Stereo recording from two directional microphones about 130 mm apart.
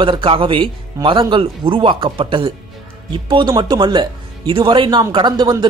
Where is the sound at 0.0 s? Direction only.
40° right (ahead or behind).